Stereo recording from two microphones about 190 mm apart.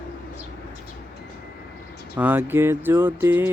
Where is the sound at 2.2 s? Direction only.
10° right (ahead or behind).